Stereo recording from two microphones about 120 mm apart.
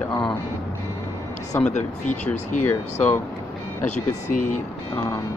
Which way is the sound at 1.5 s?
20° left (ahead or behind).